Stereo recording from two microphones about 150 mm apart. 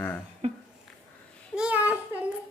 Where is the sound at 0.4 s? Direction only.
45° right (ahead or behind).